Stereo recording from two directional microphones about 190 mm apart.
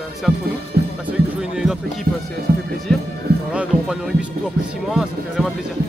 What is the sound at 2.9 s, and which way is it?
Speech, 5° left (ahead or behind).